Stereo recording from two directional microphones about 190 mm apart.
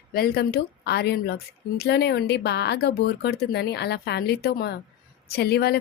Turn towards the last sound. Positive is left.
turn(degrees=55)  # may be behind; listen again after turning